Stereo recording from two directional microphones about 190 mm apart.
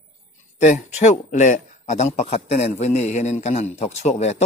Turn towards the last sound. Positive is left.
turn(degrees=35)  # may be behind; listen again after turning